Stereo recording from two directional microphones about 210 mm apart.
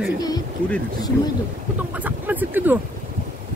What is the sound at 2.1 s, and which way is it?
Speech, 10° right (ahead or behind).